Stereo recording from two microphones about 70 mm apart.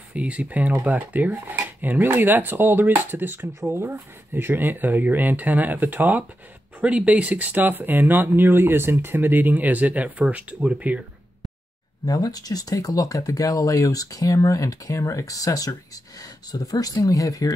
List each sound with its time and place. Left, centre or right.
0.1 s speech: centre
12.1 s speech: left